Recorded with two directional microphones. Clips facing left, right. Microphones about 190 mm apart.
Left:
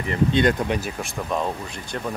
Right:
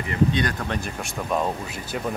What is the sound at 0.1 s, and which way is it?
Speech, 25° left (ahead or behind).